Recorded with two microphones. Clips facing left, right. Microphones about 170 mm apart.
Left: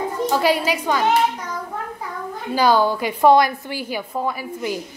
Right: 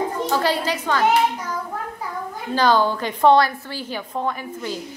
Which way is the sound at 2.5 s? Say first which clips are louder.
Left 1 dB; 10° left (ahead or behind).